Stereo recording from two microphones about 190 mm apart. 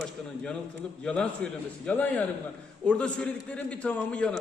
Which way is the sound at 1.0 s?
5° left (ahead or behind).